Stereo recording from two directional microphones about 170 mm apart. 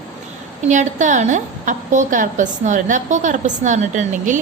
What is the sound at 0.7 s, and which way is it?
A woman's voice, 45° right (ahead or behind).